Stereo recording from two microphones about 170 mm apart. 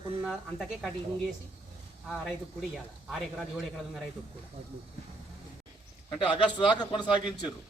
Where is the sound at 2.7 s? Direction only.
Centre (ahead or behind).